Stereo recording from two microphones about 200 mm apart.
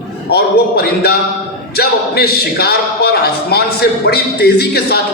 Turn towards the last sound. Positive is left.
turn(degrees=55)  # may be behind; listen again after turning